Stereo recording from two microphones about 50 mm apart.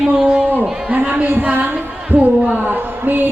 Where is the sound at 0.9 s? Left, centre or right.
Right.